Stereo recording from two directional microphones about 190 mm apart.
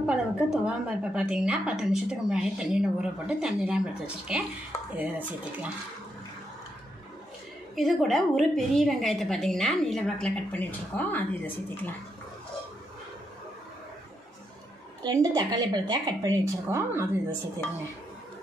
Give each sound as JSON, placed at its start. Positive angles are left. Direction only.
{"t": 0.0, "sound": "a woman's voice", "side_deg": -5}
{"t": 7.7, "sound": "a woman's voice", "side_deg": 0}
{"t": 15.0, "sound": "a woman's voice", "side_deg": -20}